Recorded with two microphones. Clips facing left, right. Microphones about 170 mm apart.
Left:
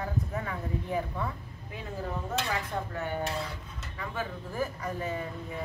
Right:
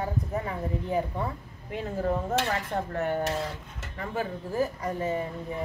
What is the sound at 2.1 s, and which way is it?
Speech, 45° right (ahead or behind).